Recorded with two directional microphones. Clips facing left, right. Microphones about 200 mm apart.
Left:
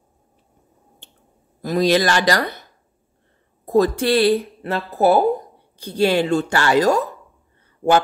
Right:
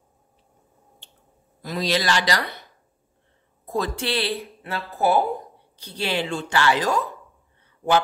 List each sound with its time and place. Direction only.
1.6 s speech: 45° left (ahead or behind)
3.6 s speech: 40° left (ahead or behind)